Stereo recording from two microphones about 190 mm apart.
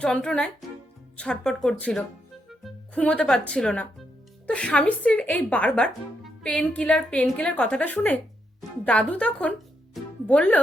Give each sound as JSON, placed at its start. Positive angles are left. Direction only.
{"t": 0.0, "sound": "speech", "side_deg": 5}